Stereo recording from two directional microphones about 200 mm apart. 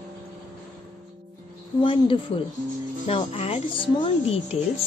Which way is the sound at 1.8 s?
25° left (ahead or behind).